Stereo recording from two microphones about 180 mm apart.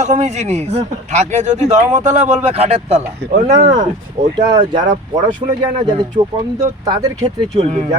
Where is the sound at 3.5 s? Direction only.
20° right (ahead or behind).